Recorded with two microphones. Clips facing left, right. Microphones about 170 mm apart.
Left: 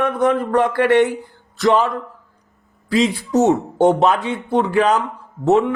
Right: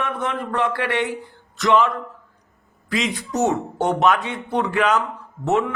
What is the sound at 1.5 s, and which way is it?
Speech, 35° left (ahead or behind).